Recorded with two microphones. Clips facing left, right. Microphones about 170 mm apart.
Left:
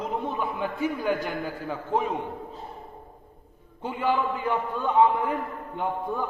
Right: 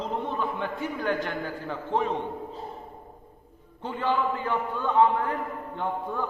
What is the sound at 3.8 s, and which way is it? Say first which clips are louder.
A man's voice: left 1 dB; 10° left (ahead or behind).